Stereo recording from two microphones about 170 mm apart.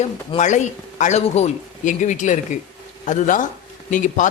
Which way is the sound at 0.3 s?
45° left (ahead or behind).